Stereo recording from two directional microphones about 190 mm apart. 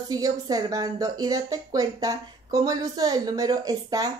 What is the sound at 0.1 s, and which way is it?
A woman's voice, 20° right (ahead or behind).